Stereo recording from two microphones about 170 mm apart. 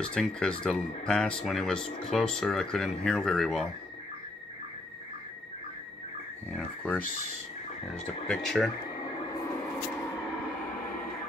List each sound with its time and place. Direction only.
0.0 s speech: 5° left (ahead or behind)
6.5 s speech: 10° left (ahead or behind)
8.3 s speech: 5° left (ahead or behind)